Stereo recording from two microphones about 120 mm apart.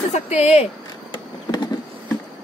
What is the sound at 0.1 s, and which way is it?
Speech, 65° left (ahead or behind).